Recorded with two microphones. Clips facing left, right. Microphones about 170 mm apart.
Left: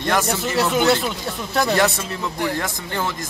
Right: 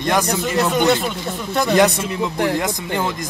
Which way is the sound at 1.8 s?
15° right (ahead or behind).